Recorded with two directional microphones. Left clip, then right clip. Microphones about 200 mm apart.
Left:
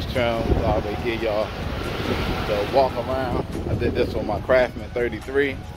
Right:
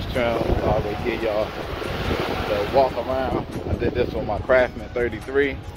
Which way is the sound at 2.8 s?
5° left (ahead or behind).